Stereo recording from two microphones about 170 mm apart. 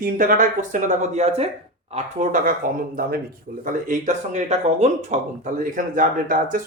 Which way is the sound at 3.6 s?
45° right (ahead or behind).